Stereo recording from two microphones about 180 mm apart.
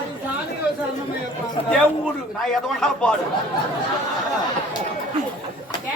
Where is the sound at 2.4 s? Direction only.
Centre (ahead or behind).